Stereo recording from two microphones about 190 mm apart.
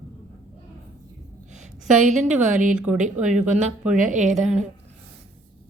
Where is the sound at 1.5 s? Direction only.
40° right (ahead or behind).